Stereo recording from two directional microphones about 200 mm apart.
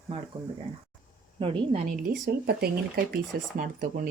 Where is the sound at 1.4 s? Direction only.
25° right (ahead or behind).